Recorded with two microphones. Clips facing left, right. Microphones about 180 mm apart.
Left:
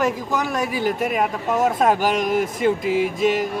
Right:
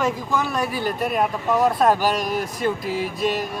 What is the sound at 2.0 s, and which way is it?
Speech, 20° left (ahead or behind).